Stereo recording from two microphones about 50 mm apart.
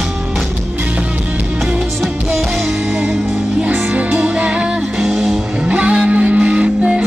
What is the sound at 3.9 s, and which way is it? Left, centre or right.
Music, right.